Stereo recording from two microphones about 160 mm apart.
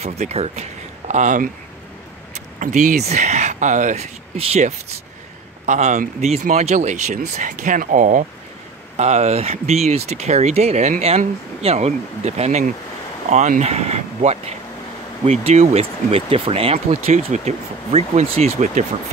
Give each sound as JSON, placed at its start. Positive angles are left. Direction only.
{"t": 0.0, "sound": "speech", "side_deg": -40}
{"t": 2.3, "sound": "a sound", "side_deg": -50}
{"t": 3.1, "sound": "speech", "side_deg": -45}